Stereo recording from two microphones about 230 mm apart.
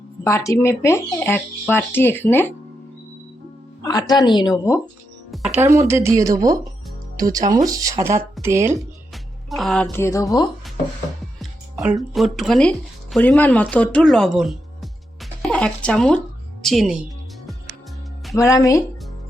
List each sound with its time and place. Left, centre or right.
0.3 s speech: centre
3.8 s speech: centre
5.5 s speech: centre
9.1 s speech: centre
11.9 s speech: centre
16.6 s music: centre
18.3 s speech: centre